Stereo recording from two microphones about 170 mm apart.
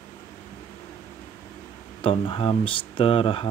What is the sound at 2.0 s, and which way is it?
Speech, 30° left (ahead or behind).